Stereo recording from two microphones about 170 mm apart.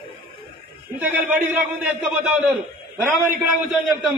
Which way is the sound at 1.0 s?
5° right (ahead or behind).